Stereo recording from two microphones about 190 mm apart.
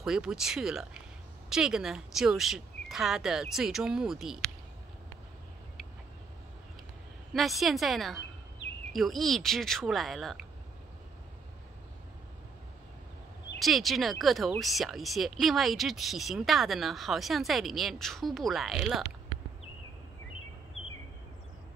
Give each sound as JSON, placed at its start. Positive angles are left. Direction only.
{"t": 0.0, "sound": "speech", "side_deg": -5}
{"t": 7.3, "sound": "speech", "side_deg": 0}
{"t": 13.6, "sound": "speech", "side_deg": 0}
{"t": 20.8, "sound": "a sound", "side_deg": 90}